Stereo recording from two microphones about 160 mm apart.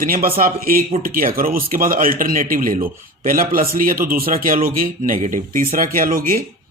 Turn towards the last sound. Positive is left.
turn(degrees=-60)  # may be behind; listen again after turning